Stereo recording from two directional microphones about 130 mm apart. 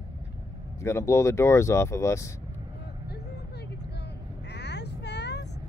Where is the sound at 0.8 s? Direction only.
20° left (ahead or behind).